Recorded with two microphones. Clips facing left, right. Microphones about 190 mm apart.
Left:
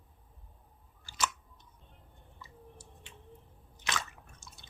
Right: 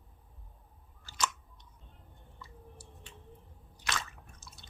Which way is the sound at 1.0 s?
5° left (ahead or behind).